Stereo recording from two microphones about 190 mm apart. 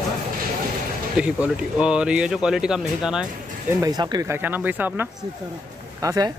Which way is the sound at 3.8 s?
20° right (ahead or behind).